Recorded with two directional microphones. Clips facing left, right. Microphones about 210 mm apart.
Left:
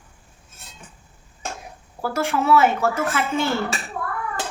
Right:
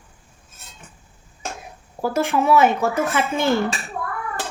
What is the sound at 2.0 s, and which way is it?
A woman's voice, 20° right (ahead or behind).